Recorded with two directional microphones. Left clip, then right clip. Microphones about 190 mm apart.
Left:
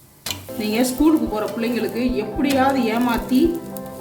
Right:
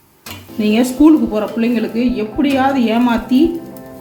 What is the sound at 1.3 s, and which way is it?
A man's voice, 40° right (ahead or behind).